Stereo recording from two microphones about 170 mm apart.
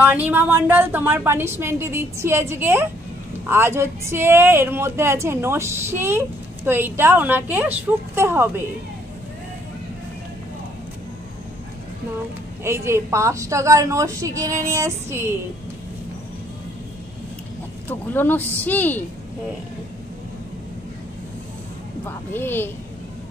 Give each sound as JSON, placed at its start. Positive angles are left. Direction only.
{"t": 0.0, "sound": "speech", "side_deg": -10}
{"t": 12.6, "sound": "speech", "side_deg": -15}
{"t": 17.8, "sound": "speech", "side_deg": 10}
{"t": 22.0, "sound": "speech", "side_deg": 10}